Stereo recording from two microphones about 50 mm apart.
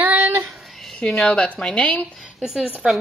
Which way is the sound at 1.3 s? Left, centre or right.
Left.